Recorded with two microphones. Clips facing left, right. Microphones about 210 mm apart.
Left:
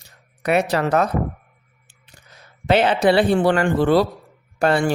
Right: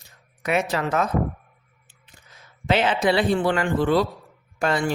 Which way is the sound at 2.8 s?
70° left (ahead or behind).